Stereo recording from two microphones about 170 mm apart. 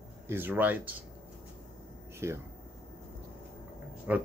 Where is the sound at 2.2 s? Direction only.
15° right (ahead or behind).